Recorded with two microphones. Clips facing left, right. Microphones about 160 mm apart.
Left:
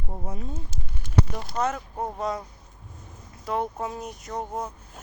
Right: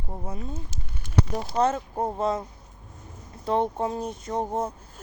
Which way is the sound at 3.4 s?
30° right (ahead or behind).